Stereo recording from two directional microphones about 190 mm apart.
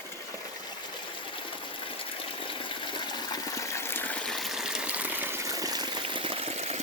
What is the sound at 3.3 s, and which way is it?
Water, 15° left (ahead or behind).